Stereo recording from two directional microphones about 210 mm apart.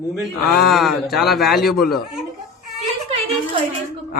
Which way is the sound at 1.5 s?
45° left (ahead or behind).